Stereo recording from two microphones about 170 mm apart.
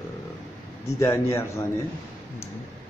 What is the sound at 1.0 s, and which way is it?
Speech, 15° left (ahead or behind).